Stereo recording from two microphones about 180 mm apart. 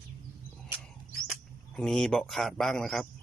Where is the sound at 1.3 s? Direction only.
5° left (ahead or behind).